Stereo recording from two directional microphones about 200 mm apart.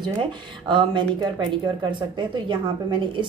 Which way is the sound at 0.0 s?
25° right (ahead or behind).